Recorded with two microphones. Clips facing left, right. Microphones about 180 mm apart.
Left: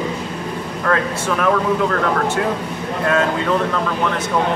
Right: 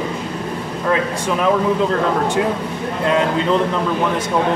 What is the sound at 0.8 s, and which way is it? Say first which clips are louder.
Speech: right 1 dB; 15° right (ahead or behind).